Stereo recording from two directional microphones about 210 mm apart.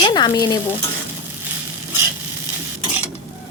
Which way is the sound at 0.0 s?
20° left (ahead or behind).